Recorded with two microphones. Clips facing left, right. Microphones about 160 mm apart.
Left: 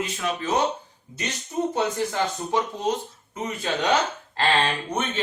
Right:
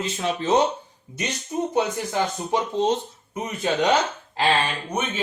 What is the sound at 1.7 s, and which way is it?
Speech, 20° right (ahead or behind).